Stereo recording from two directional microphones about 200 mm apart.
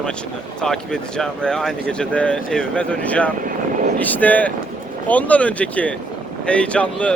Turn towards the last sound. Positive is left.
turn(degrees=5)  # may be behind; listen again after turning